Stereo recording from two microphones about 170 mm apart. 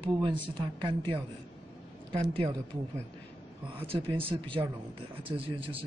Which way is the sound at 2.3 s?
30° right (ahead or behind).